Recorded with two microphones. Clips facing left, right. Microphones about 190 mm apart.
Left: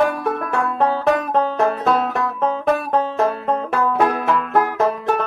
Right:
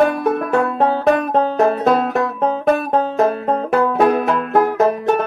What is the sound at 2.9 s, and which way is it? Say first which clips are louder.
Banjo: right 3 dB; 15° right (ahead or behind).